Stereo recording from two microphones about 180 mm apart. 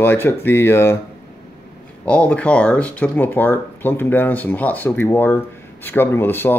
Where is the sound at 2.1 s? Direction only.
10° left (ahead or behind).